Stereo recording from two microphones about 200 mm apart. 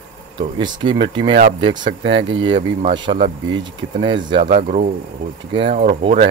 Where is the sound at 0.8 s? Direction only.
25° right (ahead or behind).